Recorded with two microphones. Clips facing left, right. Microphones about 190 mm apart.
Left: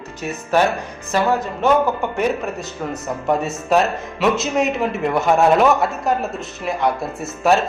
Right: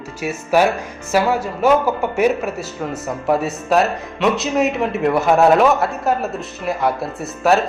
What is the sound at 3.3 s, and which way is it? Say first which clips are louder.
Speech: right 1 dB; centre (ahead or behind).